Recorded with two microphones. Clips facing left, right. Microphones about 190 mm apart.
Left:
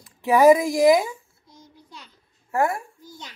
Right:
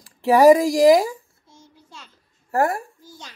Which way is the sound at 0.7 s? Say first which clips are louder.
Right 3 dB; 35° right (ahead or behind).